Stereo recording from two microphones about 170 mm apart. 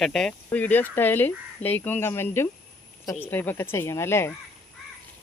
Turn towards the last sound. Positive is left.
turn(degrees=15)  # may be behind; listen again after turning